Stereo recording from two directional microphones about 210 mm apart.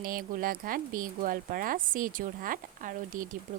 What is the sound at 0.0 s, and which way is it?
Speech, 45° right (ahead or behind).